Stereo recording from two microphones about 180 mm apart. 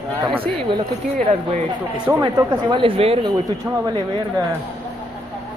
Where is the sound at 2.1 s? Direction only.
25° right (ahead or behind).